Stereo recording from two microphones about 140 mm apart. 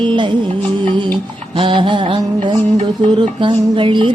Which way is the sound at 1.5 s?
35° right (ahead or behind).